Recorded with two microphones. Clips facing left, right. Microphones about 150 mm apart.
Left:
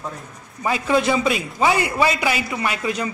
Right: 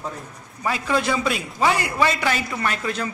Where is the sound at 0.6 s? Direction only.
5° left (ahead or behind).